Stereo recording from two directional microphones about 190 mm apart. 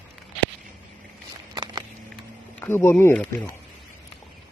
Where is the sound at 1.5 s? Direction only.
20° right (ahead or behind).